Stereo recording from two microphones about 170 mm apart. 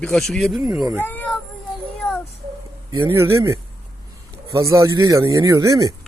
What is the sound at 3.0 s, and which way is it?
Speech, 15° right (ahead or behind).